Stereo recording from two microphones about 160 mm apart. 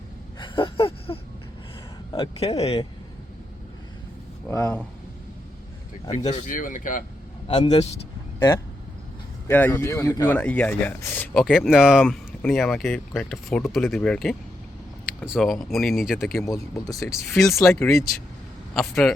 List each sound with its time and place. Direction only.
0.3 s a sound: 30° left (ahead or behind)
2.1 s speech: 35° left (ahead or behind)
4.4 s speech: 20° left (ahead or behind)
6.1 s speech: 45° left (ahead or behind)
7.4 s speech: 35° left (ahead or behind)
9.5 s speech: 10° left (ahead or behind)
10.2 s speech: 10° left (ahead or behind)
11.3 s speech: centre (ahead or behind)
16.9 s speech: 20° left (ahead or behind)
17.7 s speech: centre (ahead or behind)